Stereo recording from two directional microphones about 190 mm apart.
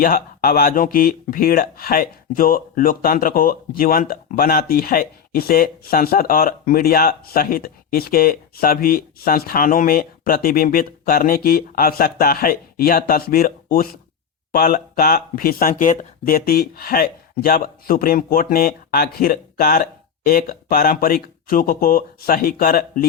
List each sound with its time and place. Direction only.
0.0 s speech: 50° left (ahead or behind)